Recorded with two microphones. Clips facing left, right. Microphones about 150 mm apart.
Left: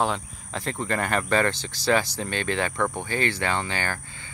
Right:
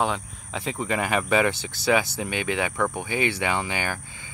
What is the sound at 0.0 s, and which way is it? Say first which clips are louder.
Speech: even; centre (ahead or behind).